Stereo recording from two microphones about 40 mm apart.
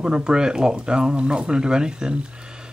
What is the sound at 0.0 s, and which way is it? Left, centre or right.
Speech, centre.